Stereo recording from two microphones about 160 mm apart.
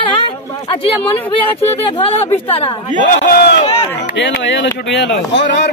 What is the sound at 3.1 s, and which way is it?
Speech, 70° left (ahead or behind).